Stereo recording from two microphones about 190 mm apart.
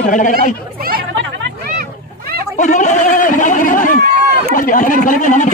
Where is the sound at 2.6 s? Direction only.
40° left (ahead or behind).